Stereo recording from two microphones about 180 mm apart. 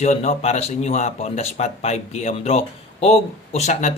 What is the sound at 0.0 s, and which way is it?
Speech, 40° left (ahead or behind).